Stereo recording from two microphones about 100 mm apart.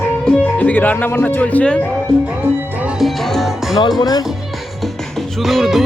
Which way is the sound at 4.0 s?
45° left (ahead or behind).